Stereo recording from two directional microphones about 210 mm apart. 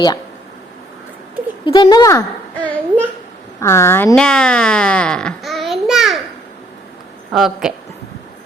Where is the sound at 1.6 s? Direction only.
20° left (ahead or behind).